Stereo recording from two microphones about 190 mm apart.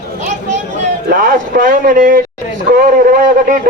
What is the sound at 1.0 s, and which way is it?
A man's voice, 45° right (ahead or behind).